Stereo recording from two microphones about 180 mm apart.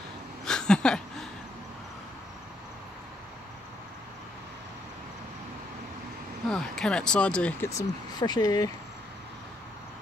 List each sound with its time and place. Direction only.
0.5 s a sound: 5° left (ahead or behind)
6.5 s speech: 5° left (ahead or behind)
7.7 s speech: 20° left (ahead or behind)